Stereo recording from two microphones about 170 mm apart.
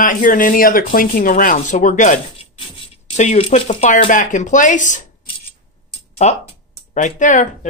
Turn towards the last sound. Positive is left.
turn(degrees=45)  # may be behind; listen again after turning